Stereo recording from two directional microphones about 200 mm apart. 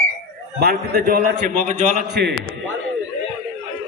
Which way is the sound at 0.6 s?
50° right (ahead or behind).